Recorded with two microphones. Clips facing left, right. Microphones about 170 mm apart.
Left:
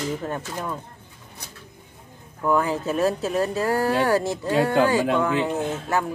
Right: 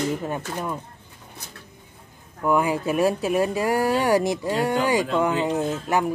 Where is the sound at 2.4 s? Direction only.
10° right (ahead or behind).